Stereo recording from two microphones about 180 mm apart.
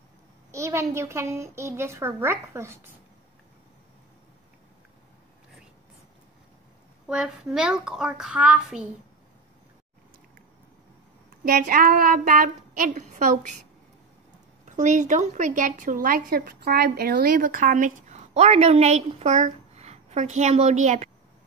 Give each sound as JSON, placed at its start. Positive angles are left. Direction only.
{"t": 0.5, "sound": "a woman's voice", "side_deg": -15}
{"t": 7.1, "sound": "a child's voice", "side_deg": -5}
{"t": 11.4, "sound": "speech", "side_deg": -55}
{"t": 14.8, "sound": "speech", "side_deg": -45}